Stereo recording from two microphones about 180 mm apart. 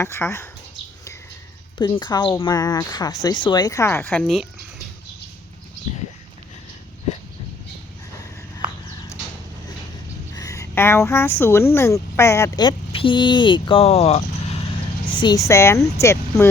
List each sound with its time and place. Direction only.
0.0 s a woman's voice: 15° left (ahead or behind)
1.8 s speech: 25° left (ahead or behind); by 4.4 s 5° left (ahead or behind)
10.3 s speech: 20° left (ahead or behind); by 14.6 s 35° left (ahead or behind)
15.2 s a woman's voice: 20° left (ahead or behind)